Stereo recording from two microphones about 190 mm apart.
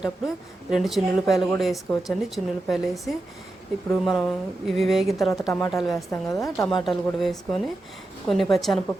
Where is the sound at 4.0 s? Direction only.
Centre (ahead or behind).